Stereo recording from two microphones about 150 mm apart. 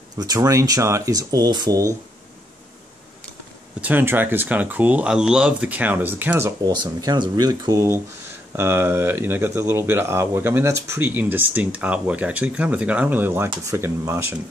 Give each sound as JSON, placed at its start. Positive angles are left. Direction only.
{"t": 0.2, "sound": "speech", "side_deg": -25}
{"t": 3.8, "sound": "speech", "side_deg": -15}
{"t": 7.0, "sound": "speech", "side_deg": -30}